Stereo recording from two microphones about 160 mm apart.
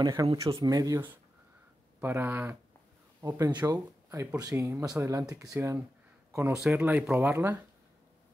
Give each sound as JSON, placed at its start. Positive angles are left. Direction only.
{"t": 0.0, "sound": "speech", "side_deg": -25}